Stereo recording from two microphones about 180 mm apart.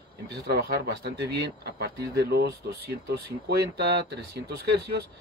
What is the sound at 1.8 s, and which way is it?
Speech, 65° right (ahead or behind).